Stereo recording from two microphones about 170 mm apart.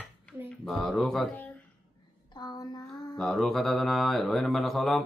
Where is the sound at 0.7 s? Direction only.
Centre (ahead or behind).